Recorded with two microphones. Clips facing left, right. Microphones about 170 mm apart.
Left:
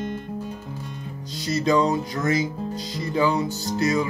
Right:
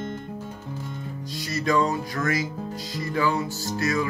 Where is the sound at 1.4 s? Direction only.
20° left (ahead or behind).